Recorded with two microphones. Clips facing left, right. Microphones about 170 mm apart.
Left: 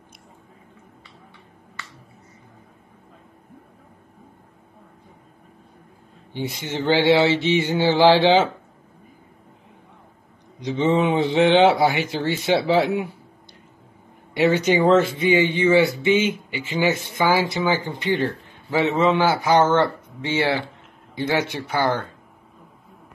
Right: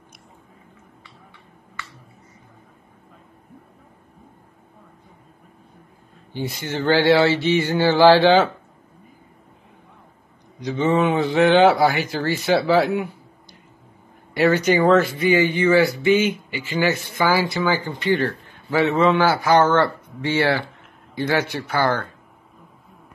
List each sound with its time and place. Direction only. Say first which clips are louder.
6.3 s speech: right 1 dB; 20° left (ahead or behind)
10.6 s speech: even; 25° left (ahead or behind)
14.3 s speech: right 1 dB; 20° left (ahead or behind)